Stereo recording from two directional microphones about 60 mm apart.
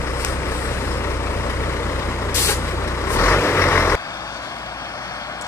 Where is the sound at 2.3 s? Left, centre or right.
Left.